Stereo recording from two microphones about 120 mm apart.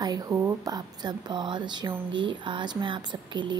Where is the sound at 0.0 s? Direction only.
30° right (ahead or behind).